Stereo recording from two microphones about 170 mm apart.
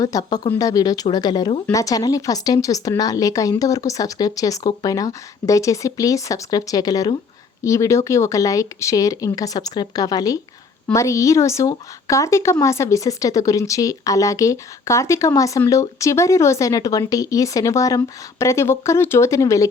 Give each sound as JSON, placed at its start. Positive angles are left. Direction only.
{"t": 0.0, "sound": "speech", "side_deg": 20}